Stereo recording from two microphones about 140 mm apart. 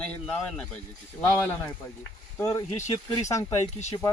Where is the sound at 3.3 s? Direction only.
20° left (ahead or behind).